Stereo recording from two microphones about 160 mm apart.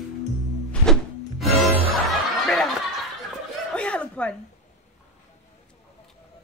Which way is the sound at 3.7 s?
5° left (ahead or behind).